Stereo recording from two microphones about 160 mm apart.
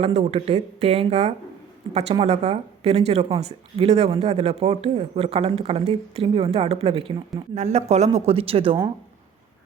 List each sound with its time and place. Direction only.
0.0 s speech: 45° right (ahead or behind)